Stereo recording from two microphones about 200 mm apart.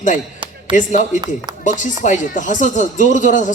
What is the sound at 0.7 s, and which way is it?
Speech, 40° left (ahead or behind).